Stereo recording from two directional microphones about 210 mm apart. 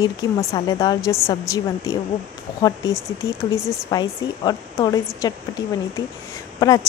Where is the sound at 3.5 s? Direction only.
20° left (ahead or behind).